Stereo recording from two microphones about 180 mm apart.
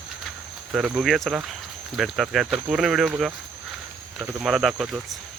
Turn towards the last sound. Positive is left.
turn(degrees=0)  # may be behind; listen again after turning